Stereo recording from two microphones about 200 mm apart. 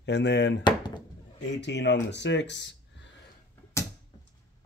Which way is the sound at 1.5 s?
60° left (ahead or behind).